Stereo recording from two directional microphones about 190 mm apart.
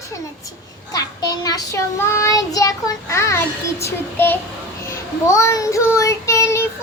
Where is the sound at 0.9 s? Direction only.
20° left (ahead or behind).